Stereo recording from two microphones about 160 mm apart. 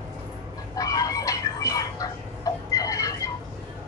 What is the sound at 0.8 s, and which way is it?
Chicken, 20° left (ahead or behind).